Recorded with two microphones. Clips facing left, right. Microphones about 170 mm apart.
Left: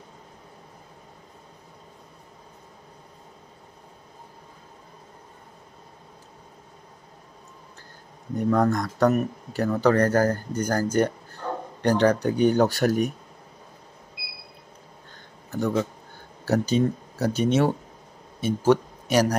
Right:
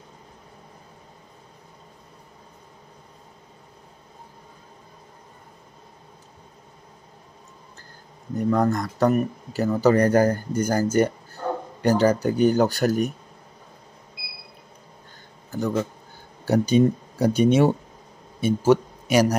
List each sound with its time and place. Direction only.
8.4 s speech: centre (ahead or behind)
15.5 s speech: centre (ahead or behind)
16.4 s speech: 15° right (ahead or behind)